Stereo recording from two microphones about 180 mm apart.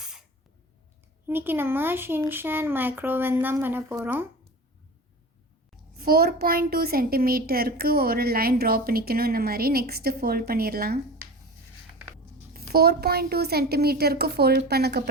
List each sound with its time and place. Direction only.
0.0 s spray: 5° right (ahead or behind)
1.3 s speech: 10° right (ahead or behind)
6.0 s a child's voice: 55° right (ahead or behind)
12.5 s a child's voice: 60° right (ahead or behind)